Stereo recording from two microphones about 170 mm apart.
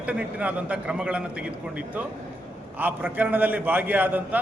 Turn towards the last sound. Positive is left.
turn(degrees=-10)  # may be behind; listen again after turning